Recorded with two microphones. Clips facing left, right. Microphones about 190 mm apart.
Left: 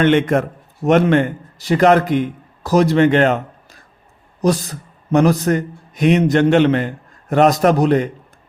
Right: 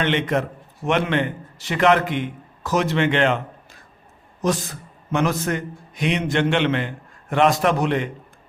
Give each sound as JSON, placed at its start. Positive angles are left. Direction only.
{"t": 0.0, "sound": "a man's voice", "side_deg": 50}